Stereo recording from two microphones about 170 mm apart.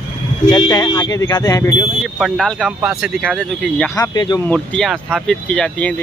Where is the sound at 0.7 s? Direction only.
20° left (ahead or behind).